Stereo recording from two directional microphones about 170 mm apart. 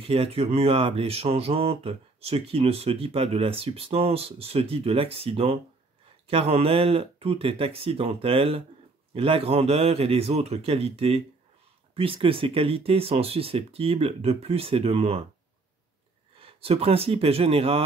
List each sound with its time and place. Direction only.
0.0 s speech: 35° right (ahead or behind)
16.3 s speech: 35° right (ahead or behind)